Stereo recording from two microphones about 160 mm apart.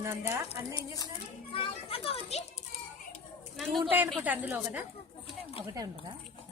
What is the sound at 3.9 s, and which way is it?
Speech, 10° right (ahead or behind).